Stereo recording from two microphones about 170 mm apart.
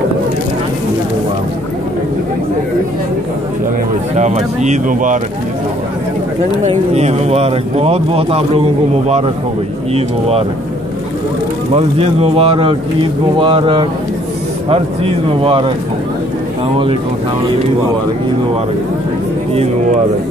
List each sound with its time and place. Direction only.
4.2 s speech: 45° right (ahead or behind)
6.6 s speech: 40° right (ahead or behind)
9.9 s speech: 35° right (ahead or behind)
11.7 s speech: 35° right (ahead or behind)